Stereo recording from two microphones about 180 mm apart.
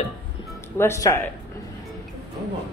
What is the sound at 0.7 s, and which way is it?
Speech, 15° left (ahead or behind).